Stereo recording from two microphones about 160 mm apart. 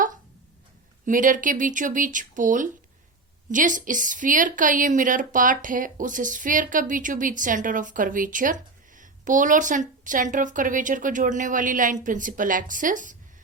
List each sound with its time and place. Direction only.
1.0 s a woman's voice: 55° right (ahead or behind)